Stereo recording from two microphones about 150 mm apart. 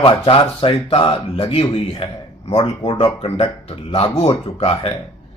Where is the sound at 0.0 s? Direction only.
40° left (ahead or behind).